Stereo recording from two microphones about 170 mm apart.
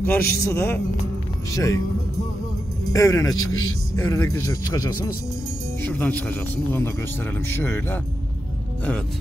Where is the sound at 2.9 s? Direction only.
20° left (ahead or behind).